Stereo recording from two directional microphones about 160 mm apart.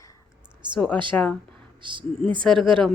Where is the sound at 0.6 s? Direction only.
30° right (ahead or behind).